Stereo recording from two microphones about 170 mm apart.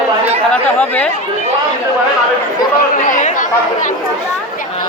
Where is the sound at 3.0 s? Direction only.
45° left (ahead or behind).